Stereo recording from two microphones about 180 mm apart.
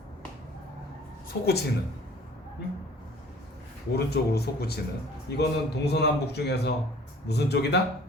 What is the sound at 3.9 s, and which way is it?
Speech, 65° left (ahead or behind).